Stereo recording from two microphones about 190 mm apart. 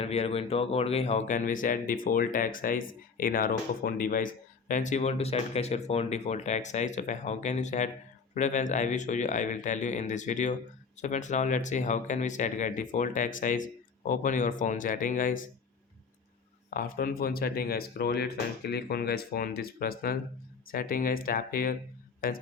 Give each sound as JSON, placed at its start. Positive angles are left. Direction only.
{"t": 0.0, "sound": "speech", "side_deg": 35}
{"t": 16.6, "sound": "speech", "side_deg": 50}